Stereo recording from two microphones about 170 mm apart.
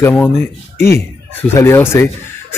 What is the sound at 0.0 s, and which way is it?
A man's voice, 10° left (ahead or behind).